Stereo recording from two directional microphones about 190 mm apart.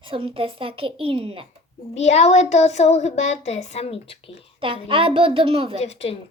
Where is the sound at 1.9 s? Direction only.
35° left (ahead or behind).